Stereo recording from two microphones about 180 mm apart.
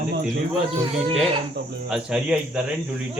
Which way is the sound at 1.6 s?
70° right (ahead or behind).